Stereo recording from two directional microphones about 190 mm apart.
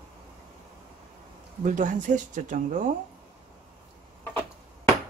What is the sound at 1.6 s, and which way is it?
Speech, 40° right (ahead or behind).